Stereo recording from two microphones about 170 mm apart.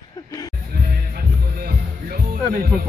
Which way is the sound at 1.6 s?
60° right (ahead or behind).